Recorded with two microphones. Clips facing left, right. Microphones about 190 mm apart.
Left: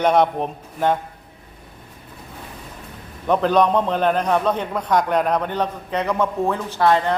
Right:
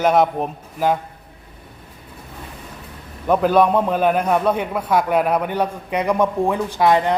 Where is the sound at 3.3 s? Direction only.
5° right (ahead or behind).